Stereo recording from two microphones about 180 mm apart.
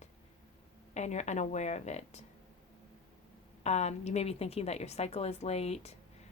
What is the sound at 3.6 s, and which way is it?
Speech, 35° left (ahead or behind).